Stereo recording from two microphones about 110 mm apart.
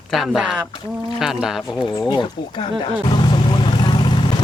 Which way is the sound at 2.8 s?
45° left (ahead or behind).